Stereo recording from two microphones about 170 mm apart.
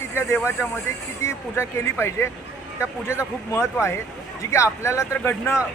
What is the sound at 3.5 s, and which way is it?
Speech, 15° left (ahead or behind).